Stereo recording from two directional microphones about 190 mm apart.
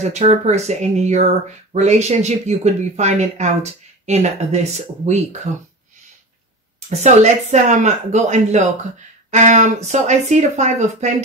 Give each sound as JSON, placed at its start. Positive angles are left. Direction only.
{"t": 0.0, "sound": "speech", "side_deg": -35}
{"t": 6.9, "sound": "speech", "side_deg": -35}